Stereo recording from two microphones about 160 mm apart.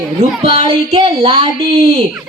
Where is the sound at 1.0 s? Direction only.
25° right (ahead or behind).